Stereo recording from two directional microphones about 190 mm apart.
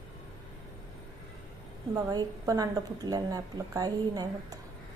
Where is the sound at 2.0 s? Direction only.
20° right (ahead or behind).